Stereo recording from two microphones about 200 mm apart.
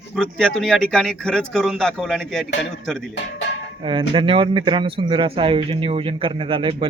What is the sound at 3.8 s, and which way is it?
Speech, 25° right (ahead or behind).